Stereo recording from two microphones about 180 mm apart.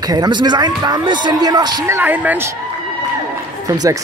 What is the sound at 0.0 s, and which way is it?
A man's voice, 20° right (ahead or behind).